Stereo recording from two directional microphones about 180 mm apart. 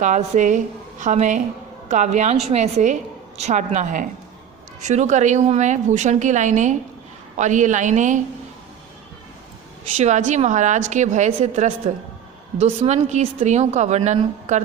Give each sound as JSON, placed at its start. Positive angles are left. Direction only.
{"t": 0.0, "sound": "a woman's voice", "side_deg": -40}
{"t": 10.0, "sound": "a woman's voice", "side_deg": -40}